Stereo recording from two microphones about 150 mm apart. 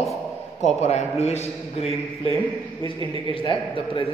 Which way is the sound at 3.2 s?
35° left (ahead or behind).